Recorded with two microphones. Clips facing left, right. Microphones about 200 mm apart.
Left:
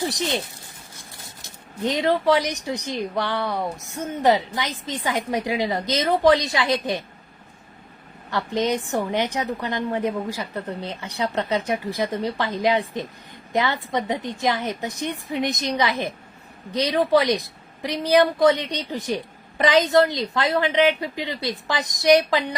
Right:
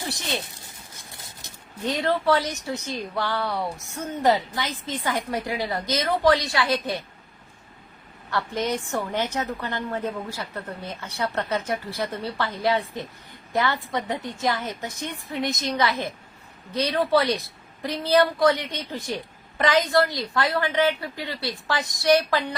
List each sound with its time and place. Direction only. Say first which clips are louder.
0.0 s speech: left 5 dB; 15° left (ahead or behind)
1.8 s a woman's voice: left 3 dB; 15° left (ahead or behind)
8.3 s a woman's voice: left 3 dB; 15° left (ahead or behind)